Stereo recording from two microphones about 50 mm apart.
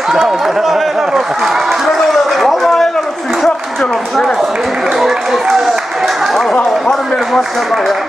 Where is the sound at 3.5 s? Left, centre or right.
Centre.